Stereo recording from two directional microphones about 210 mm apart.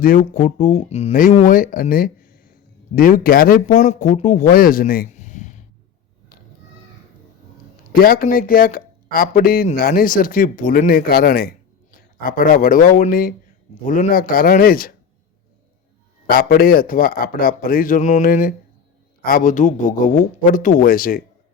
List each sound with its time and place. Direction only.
0.0 s a man's voice: 40° left (ahead or behind)
8.0 s speech: 45° left (ahead or behind)
16.2 s a man's voice: 45° left (ahead or behind)